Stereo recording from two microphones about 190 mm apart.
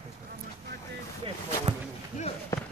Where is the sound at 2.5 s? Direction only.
15° left (ahead or behind).